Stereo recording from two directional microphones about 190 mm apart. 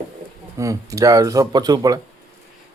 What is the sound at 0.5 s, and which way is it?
Speech, 15° right (ahead or behind).